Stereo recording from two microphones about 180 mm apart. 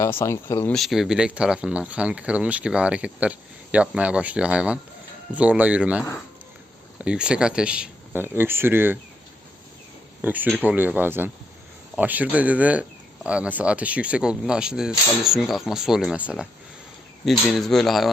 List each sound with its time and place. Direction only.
0.0 s speech: 15° left (ahead or behind)
0.7 s speech: centre (ahead or behind)
10.2 s speech: 10° right (ahead or behind)